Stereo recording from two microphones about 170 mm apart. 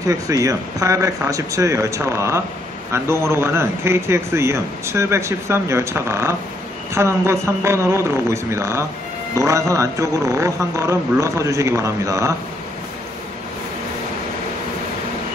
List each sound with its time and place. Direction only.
0.0 s speech: 20° right (ahead or behind)